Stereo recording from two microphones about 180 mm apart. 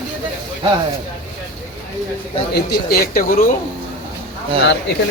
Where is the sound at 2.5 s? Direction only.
60° left (ahead or behind).